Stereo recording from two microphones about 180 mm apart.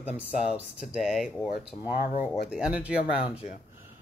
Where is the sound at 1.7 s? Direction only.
30° left (ahead or behind).